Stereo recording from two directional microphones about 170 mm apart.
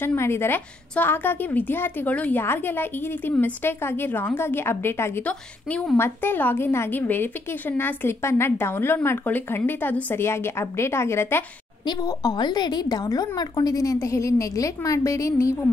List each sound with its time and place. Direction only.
0.0 s a woman's voice: 15° left (ahead or behind)
11.8 s a woman's voice: 25° left (ahead or behind)